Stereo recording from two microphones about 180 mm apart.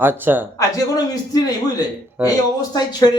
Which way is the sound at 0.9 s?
20° left (ahead or behind).